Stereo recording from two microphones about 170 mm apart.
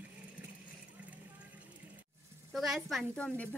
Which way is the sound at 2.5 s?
Centre (ahead or behind).